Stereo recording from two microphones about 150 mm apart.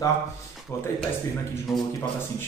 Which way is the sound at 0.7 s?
15° left (ahead or behind).